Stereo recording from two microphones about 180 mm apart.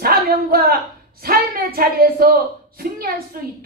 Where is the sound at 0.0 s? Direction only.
55° right (ahead or behind).